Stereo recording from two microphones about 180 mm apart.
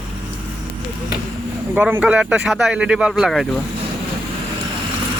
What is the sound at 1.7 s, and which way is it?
Speech, 10° right (ahead or behind).